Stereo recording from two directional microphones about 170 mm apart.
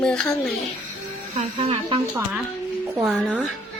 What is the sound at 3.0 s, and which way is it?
Speech, 5° right (ahead or behind).